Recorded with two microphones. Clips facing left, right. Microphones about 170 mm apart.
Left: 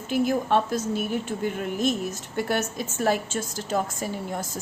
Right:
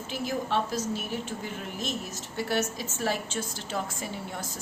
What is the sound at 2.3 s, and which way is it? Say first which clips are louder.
A woman's voice: left 2 dB; 55° left (ahead or behind).